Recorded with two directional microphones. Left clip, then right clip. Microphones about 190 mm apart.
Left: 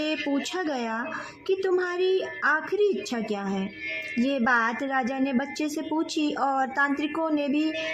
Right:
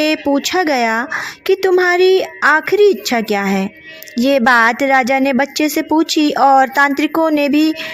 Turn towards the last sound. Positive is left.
turn(degrees=-35)  # may be behind; listen again after turning